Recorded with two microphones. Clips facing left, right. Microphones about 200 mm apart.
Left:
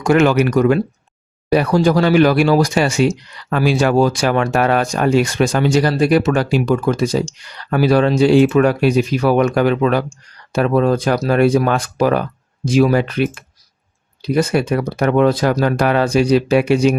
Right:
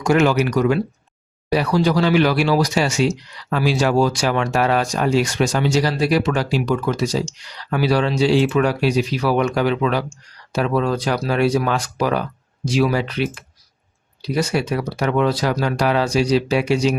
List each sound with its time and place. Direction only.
0.0 s speech: 55° left (ahead or behind)